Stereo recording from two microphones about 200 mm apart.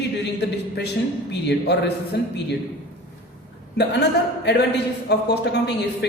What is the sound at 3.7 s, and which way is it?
Speech, 60° left (ahead or behind).